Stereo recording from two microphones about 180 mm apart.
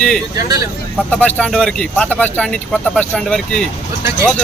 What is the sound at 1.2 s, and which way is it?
Speech, 10° left (ahead or behind).